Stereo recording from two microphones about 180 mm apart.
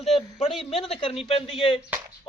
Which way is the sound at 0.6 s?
35° left (ahead or behind).